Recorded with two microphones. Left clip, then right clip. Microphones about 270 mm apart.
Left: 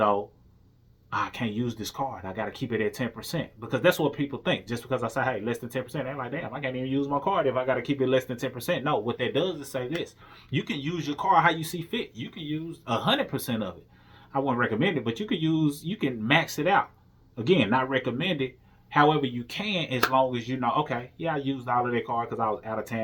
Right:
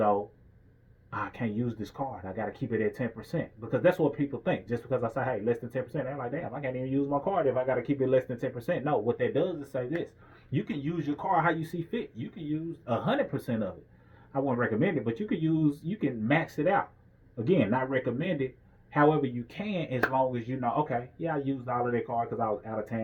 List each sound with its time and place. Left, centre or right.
1.1 s speech: centre